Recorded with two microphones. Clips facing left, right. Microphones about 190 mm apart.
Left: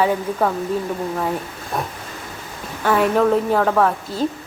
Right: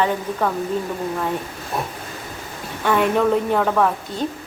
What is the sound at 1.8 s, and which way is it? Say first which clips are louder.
Speech: left 1 dB; 5° right (ahead or behind).